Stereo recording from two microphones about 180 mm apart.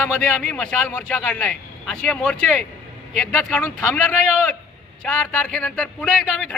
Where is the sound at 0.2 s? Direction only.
5° left (ahead or behind).